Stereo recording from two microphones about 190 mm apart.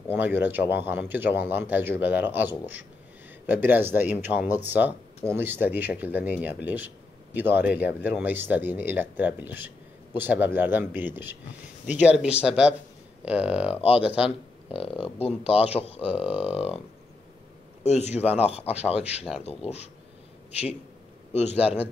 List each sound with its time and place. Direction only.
0.1 s speech: 10° right (ahead or behind)
14.7 s speech: 30° left (ahead or behind)
17.8 s speech: 35° left (ahead or behind)
21.3 s speech: 35° left (ahead or behind)